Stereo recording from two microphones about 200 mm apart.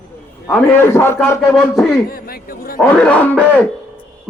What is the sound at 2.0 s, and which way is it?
Speech, 45° left (ahead or behind).